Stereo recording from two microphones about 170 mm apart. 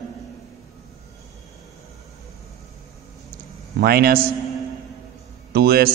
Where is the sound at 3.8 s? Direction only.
65° right (ahead or behind).